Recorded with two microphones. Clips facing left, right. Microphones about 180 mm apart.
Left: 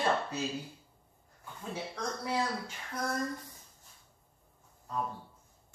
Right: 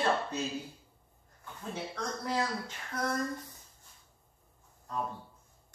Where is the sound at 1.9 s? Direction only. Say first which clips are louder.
Even; 10° left (ahead or behind).